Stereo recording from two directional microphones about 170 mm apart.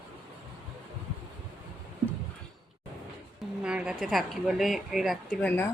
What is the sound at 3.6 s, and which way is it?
A woman's voice, 5° right (ahead or behind).